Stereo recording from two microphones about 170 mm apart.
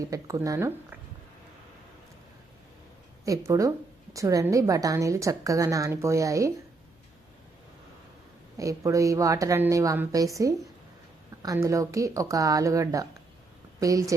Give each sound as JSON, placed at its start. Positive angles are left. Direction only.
{"t": 0.1, "sound": "a woman's voice", "side_deg": -20}
{"t": 3.2, "sound": "a woman's voice", "side_deg": -20}
{"t": 8.5, "sound": "a woman's voice", "side_deg": -20}